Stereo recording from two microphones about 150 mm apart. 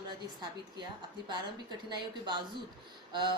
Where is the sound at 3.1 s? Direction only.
30° right (ahead or behind).